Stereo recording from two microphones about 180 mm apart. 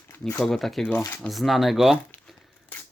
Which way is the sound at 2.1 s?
5° left (ahead or behind).